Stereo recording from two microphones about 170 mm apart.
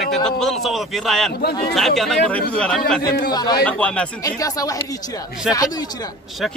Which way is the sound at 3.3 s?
25° left (ahead or behind).